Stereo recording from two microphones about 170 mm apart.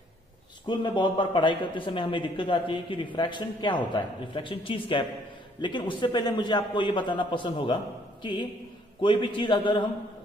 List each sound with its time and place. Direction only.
0.7 s speech: 25° left (ahead or behind)